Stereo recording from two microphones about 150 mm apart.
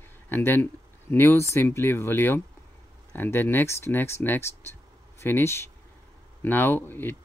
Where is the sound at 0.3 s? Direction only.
15° left (ahead or behind).